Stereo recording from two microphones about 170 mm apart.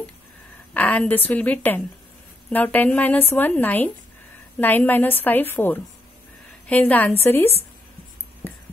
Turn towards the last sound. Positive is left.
turn(degrees=10)  # may be behind; listen again after turning